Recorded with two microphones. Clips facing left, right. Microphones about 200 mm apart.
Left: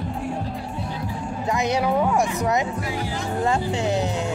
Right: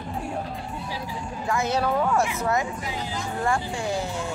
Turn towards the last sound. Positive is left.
turn(degrees=20)  # may be behind; listen again after turning